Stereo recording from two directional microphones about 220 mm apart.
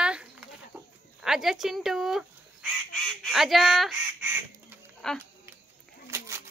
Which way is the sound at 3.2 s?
Centre (ahead or behind).